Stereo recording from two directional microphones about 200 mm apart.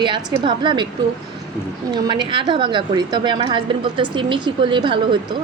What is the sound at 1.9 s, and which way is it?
A woman's voice, 20° right (ahead or behind).